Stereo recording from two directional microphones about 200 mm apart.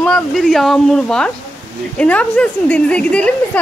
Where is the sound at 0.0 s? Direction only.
5° left (ahead or behind).